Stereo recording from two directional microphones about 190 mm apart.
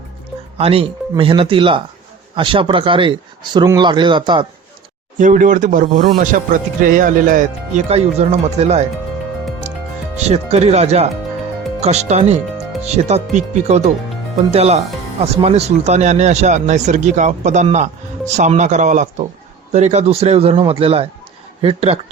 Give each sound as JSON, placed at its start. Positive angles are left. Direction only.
{"t": 0.5, "sound": "speech", "side_deg": -30}
{"t": 5.1, "sound": "speech", "side_deg": -40}
{"t": 10.2, "sound": "speech", "side_deg": -35}